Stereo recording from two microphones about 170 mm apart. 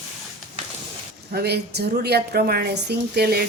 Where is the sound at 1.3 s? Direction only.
70° right (ahead or behind).